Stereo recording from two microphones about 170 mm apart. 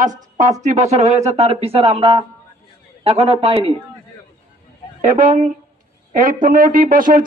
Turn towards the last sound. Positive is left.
turn(degrees=-55)  # may be behind; listen again after turning